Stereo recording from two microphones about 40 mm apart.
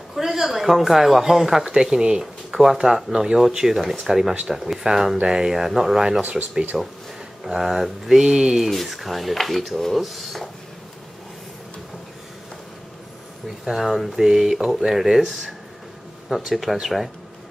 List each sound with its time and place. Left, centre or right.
0.1 s speech: centre
6.7 s speech: centre
8.6 s speech: centre
13.7 s speech: centre